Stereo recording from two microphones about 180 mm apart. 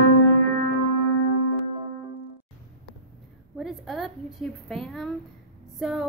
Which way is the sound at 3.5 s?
Centre (ahead or behind).